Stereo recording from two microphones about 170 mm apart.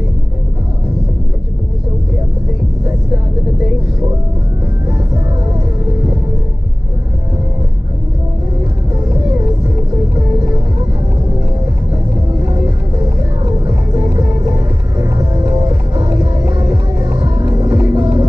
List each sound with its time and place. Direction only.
12.4 s music: 20° right (ahead or behind)
17.2 s music: 30° right (ahead or behind)